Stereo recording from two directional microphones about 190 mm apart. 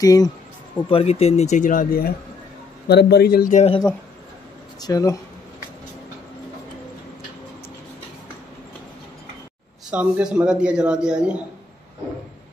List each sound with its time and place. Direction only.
0.0 s speech: 20° left (ahead or behind)
0.8 s speech: 30° left (ahead or behind); by 3.6 s 50° left (ahead or behind)
4.7 s speech: 20° left (ahead or behind)
9.8 s speech: 5° right (ahead or behind)